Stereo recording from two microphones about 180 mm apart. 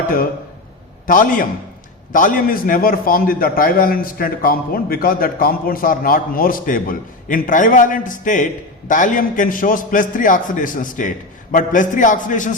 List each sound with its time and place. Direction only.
1.0 s a man's voice: 50° left (ahead or behind)